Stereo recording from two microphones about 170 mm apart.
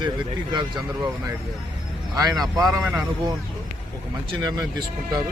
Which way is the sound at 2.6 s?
Centre (ahead or behind).